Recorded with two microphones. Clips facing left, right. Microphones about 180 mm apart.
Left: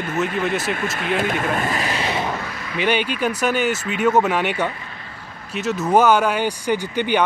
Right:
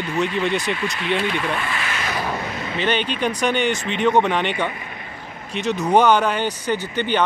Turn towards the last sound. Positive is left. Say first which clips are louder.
# left 2 dB
turn(degrees=10)  # may be behind; listen again after turning